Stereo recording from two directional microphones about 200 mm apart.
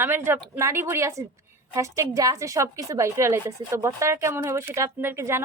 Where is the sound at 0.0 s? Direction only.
10° right (ahead or behind).